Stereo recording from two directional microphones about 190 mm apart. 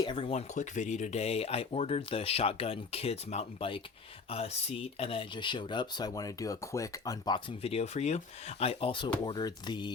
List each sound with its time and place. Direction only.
0.0 s speech: 25° left (ahead or behind)